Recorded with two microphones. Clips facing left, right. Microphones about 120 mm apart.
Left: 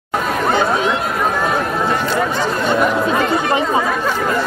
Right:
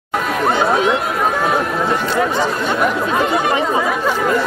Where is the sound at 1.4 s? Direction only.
5° right (ahead or behind).